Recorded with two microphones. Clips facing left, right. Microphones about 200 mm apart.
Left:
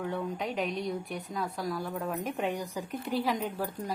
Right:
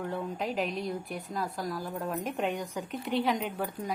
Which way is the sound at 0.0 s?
Centre (ahead or behind).